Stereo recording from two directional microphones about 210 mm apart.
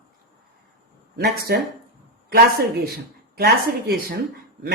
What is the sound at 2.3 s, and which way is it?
A woman's voice, 50° right (ahead or behind).